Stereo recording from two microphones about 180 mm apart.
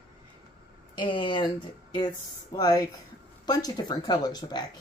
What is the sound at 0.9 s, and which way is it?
Speech, 25° left (ahead or behind).